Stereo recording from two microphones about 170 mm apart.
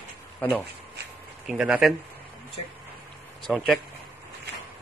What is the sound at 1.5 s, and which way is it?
Speech, 5° right (ahead or behind).